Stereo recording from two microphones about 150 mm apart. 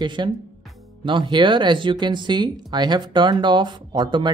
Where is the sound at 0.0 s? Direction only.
30° right (ahead or behind).